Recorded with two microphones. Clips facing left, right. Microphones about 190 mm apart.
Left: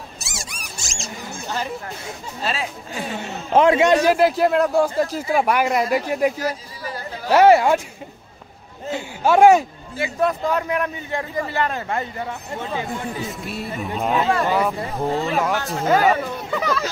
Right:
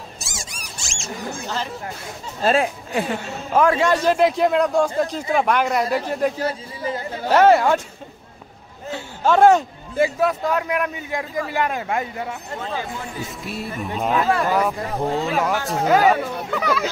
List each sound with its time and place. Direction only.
0.2 s a sound: 65° left (ahead or behind); by 1.1 s 40° left (ahead or behind)
2.4 s speech: 55° right (ahead or behind)
3.2 s a man's voice: 20° left (ahead or behind)
4.2 s speech: centre (ahead or behind)
6.4 s speech: 25° right (ahead or behind)
7.3 s speech: 10° left (ahead or behind)
8.9 s speech: 10° left (ahead or behind)
10.2 s a man's voice: 5° right (ahead or behind)